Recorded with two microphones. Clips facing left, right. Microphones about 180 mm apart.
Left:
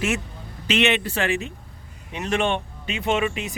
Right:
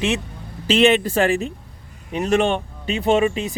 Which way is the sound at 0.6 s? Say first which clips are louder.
Right 6 dB; 35° right (ahead or behind).